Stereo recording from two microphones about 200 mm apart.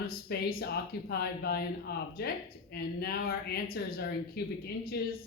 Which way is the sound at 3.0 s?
50° left (ahead or behind).